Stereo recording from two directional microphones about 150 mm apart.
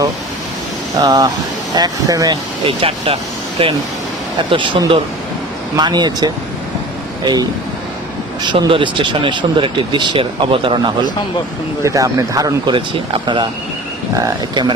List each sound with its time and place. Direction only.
0.9 s speech: 25° right (ahead or behind)
2.6 s speech: 40° right (ahead or behind)
8.4 s speech: 35° right (ahead or behind)
11.8 s speech: 20° right (ahead or behind)